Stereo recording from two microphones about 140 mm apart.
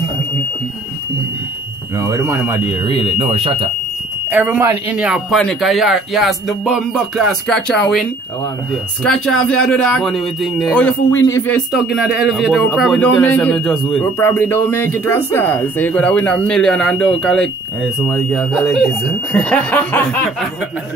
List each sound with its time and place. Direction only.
2.0 s speech: 20° right (ahead or behind)
2.9 s speech: 40° right (ahead or behind)
4.3 s speech: 15° right (ahead or behind)
4.9 s speech: 5° right (ahead or behind)
11.2 s speech: 20° left (ahead or behind)
11.5 s speech: centre (ahead or behind)
14.0 s speech: 15° left (ahead or behind)